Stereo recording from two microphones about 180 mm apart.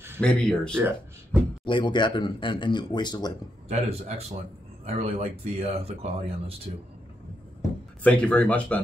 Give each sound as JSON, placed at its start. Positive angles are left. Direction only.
{"t": 0.2, "sound": "speech", "side_deg": 5}
{"t": 0.7, "sound": "speech", "side_deg": -10}
{"t": 1.6, "sound": "speech", "side_deg": 25}
{"t": 3.6, "sound": "speech", "side_deg": -35}
{"t": 8.0, "sound": "speech", "side_deg": 5}